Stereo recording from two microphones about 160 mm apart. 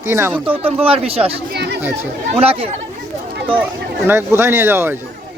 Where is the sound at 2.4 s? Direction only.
40° right (ahead or behind).